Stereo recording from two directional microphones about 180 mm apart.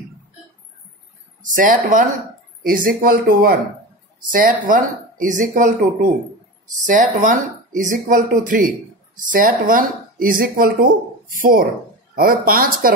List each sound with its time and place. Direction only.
1.5 s speech: 45° right (ahead or behind)
12.2 s speech: 55° right (ahead or behind)